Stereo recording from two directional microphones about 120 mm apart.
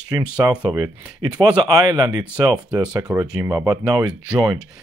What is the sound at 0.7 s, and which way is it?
Speech, 35° right (ahead or behind).